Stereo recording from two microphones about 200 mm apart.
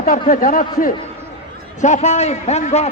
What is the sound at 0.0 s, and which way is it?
A man's voice, 45° left (ahead or behind).